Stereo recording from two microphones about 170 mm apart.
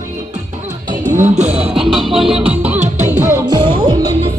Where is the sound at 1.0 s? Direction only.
45° right (ahead or behind).